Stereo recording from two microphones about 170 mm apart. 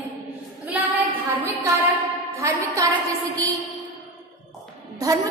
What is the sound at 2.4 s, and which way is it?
Speech, 20° right (ahead or behind).